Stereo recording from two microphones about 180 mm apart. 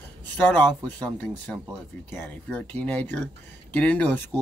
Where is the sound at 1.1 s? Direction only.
5° left (ahead or behind).